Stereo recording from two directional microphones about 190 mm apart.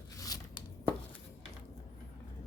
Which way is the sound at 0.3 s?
20° left (ahead or behind).